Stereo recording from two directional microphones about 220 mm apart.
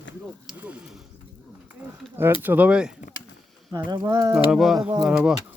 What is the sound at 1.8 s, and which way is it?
Speech, 5° right (ahead or behind).